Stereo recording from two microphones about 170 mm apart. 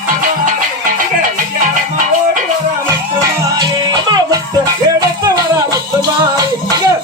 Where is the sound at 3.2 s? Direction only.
25° right (ahead or behind).